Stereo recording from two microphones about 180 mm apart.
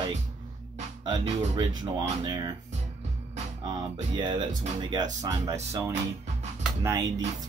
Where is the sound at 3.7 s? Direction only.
25° right (ahead or behind).